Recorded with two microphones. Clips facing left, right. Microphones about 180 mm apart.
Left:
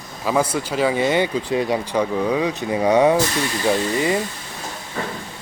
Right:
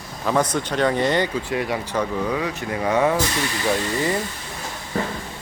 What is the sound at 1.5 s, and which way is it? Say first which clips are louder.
Speech: left 5 dB; 25° left (ahead or behind).